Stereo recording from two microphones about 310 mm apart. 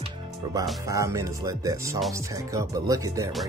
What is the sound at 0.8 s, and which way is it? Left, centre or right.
Speech, centre.